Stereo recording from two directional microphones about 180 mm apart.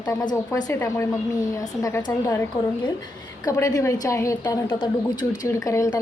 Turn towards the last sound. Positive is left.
turn(degrees=15)  # may be behind; listen again after turning